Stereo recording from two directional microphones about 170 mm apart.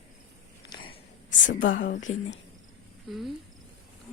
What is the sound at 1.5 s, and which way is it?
Speech, 55° left (ahead or behind).